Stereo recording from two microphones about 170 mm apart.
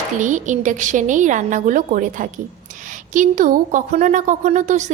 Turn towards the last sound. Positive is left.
turn(degrees=-45)  # may be behind; listen again after turning